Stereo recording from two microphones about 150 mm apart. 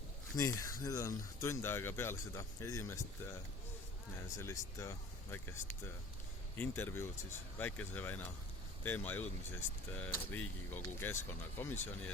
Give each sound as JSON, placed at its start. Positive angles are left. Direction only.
{"t": 0.3, "sound": "speech", "side_deg": 20}
{"t": 4.4, "sound": "speech", "side_deg": 20}